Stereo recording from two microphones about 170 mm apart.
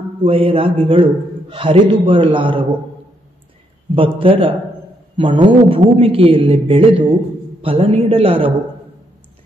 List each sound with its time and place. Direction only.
0.2 s a man's voice: 30° right (ahead or behind)
3.9 s a man's voice: 30° right (ahead or behind)